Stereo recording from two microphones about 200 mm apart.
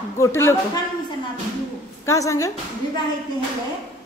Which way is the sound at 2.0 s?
15° left (ahead or behind).